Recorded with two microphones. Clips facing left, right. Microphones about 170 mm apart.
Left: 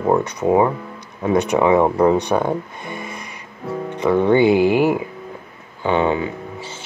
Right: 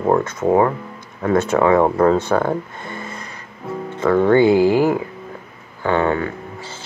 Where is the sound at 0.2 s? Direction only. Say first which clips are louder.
Even; 15° left (ahead or behind).